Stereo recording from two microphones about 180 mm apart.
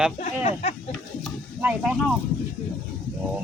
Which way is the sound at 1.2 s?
5° right (ahead or behind).